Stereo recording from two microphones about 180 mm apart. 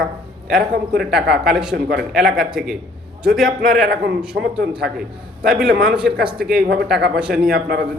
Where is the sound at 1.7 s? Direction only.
60° right (ahead or behind).